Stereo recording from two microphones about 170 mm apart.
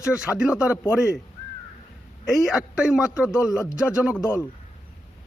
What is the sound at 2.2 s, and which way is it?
Speech, 5° right (ahead or behind).